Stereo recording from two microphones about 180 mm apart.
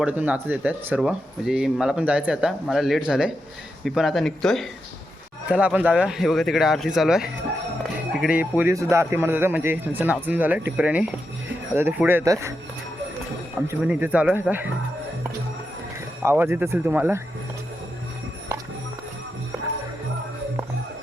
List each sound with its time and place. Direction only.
0.0 s speech: 10° right (ahead or behind)
13.7 s speech: 10° right (ahead or behind)
16.2 s speech: 15° right (ahead or behind)